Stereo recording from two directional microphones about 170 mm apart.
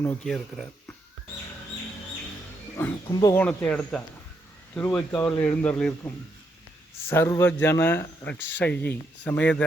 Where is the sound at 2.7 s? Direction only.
20° left (ahead or behind).